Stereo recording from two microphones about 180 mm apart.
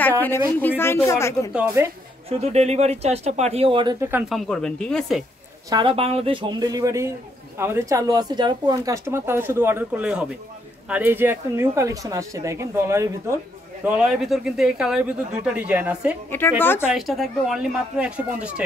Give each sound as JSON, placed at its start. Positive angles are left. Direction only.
{"t": 0.5, "sound": "speech", "side_deg": 10}
{"t": 1.5, "sound": "speech", "side_deg": -10}
{"t": 2.2, "sound": "speech", "side_deg": -35}
{"t": 4.3, "sound": "speech", "side_deg": 5}
{"t": 5.7, "sound": "speech", "side_deg": -25}
{"t": 13.8, "sound": "speech", "side_deg": -5}
{"t": 16.3, "sound": "speech", "side_deg": 10}
{"t": 16.8, "sound": "speech", "side_deg": 0}